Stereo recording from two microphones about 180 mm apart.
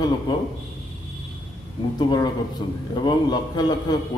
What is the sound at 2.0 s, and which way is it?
A man's voice, 25° left (ahead or behind).